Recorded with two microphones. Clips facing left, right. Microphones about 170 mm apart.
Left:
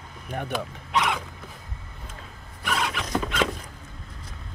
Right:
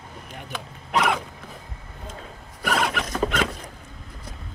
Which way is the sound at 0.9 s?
50° right (ahead or behind).